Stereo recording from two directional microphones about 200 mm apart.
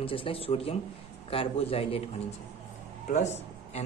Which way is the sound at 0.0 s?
25° left (ahead or behind).